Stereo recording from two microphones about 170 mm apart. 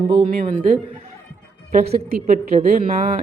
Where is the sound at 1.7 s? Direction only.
60° right (ahead or behind).